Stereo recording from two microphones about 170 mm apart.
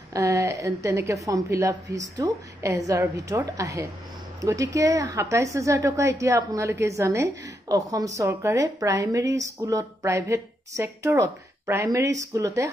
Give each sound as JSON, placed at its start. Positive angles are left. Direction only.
{"t": 0.1, "sound": "a woman's voice", "side_deg": -20}